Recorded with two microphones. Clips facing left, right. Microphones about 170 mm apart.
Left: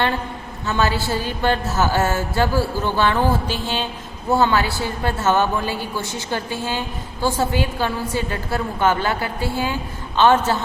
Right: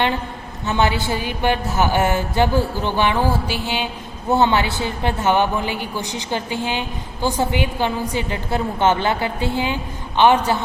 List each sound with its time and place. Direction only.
0.6 s a woman's voice: 20° right (ahead or behind)